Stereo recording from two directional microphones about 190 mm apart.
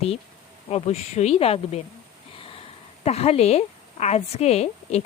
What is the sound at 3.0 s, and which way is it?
A woman's voice, 35° left (ahead or behind).